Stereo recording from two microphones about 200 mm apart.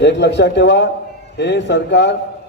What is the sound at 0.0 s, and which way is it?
A man's voice, 60° left (ahead or behind).